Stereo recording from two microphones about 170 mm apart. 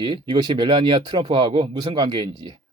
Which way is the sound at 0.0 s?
25° right (ahead or behind).